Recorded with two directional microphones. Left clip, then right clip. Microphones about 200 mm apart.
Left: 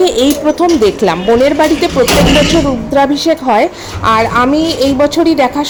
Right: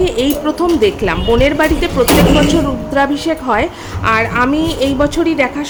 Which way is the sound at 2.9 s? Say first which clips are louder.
Left 4 dB; 15° left (ahead or behind).